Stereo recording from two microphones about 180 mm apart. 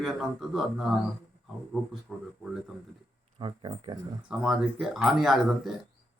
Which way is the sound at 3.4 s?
30° right (ahead or behind).